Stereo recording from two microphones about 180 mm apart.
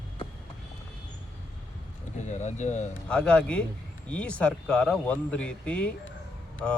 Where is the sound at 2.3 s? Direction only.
40° left (ahead or behind).